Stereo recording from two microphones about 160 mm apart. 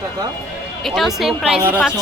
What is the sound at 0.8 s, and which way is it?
Speech, centre (ahead or behind).